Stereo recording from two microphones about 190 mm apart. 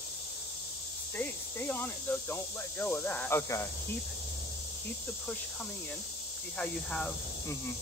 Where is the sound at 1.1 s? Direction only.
10° left (ahead or behind).